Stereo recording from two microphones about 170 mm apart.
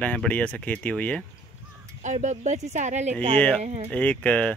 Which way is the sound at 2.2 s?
45° right (ahead or behind).